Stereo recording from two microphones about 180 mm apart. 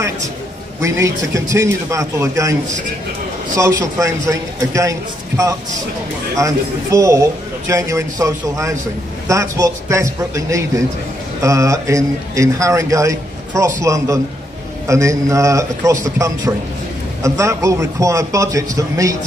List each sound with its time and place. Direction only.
0.7 s a man's voice: 15° right (ahead or behind)
3.5 s a man's voice: 15° right (ahead or behind)
6.3 s a man's voice: 15° right (ahead or behind)
17.2 s a man's voice: 15° right (ahead or behind)